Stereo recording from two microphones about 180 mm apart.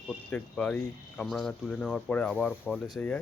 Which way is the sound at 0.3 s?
5° left (ahead or behind).